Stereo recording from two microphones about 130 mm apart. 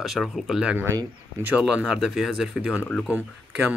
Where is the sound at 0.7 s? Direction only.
20° right (ahead or behind).